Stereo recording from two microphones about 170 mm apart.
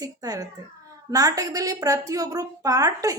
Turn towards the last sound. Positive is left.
turn(degrees=-20)  # may be behind; listen again after turning